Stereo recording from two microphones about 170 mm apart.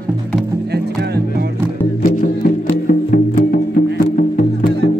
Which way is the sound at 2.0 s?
55° left (ahead or behind).